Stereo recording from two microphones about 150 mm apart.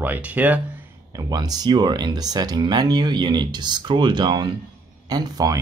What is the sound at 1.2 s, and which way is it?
Speech, 25° right (ahead or behind).